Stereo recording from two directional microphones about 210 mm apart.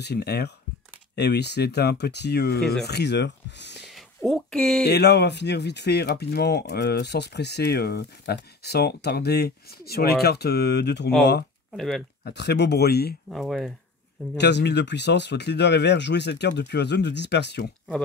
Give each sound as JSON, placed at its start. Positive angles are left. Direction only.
{"t": 0.0, "sound": "speech", "side_deg": 50}
{"t": 3.8, "sound": "a sound", "side_deg": 0}
{"t": 4.8, "sound": "speech", "side_deg": 50}
{"t": 11.7, "sound": "speech", "side_deg": 0}
{"t": 12.3, "sound": "speech", "side_deg": 55}
{"t": 13.3, "sound": "speech", "side_deg": 0}
{"t": 14.3, "sound": "speech", "side_deg": 55}